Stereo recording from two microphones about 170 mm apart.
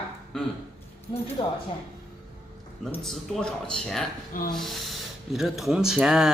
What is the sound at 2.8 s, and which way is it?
Speech, 5° left (ahead or behind).